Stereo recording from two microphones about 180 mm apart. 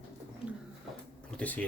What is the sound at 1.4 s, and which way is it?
Speech, 5° left (ahead or behind).